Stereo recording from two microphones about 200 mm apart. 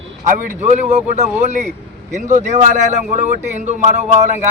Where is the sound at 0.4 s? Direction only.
35° right (ahead or behind).